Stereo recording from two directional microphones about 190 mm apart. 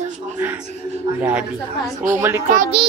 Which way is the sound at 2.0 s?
45° right (ahead or behind).